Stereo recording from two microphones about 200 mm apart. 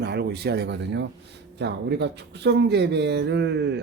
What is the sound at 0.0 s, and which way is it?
Speech, 55° right (ahead or behind).